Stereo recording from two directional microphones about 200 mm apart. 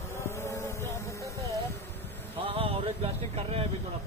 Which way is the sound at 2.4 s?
30° right (ahead or behind).